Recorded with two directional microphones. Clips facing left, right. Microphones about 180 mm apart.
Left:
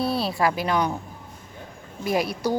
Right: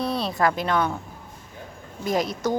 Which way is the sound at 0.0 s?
5° left (ahead or behind).